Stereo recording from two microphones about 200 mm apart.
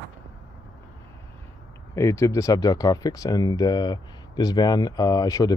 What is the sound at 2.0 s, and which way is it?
Speech, 15° left (ahead or behind).